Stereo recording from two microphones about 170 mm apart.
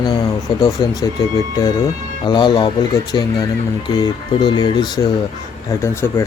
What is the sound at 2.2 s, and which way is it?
Speech, 25° left (ahead or behind).